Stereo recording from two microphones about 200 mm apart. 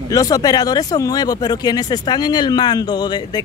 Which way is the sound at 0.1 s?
15° left (ahead or behind).